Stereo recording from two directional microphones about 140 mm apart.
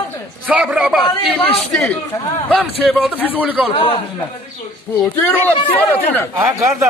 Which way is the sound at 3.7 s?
40° left (ahead or behind).